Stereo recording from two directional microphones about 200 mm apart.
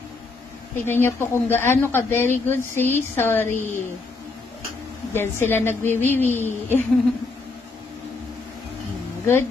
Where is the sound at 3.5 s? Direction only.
40° left (ahead or behind).